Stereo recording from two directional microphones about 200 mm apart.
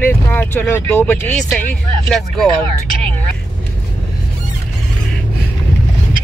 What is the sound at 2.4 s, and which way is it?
Speech, 25° right (ahead or behind).